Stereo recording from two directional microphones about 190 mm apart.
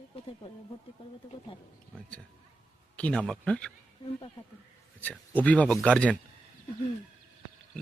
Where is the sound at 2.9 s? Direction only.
5° left (ahead or behind).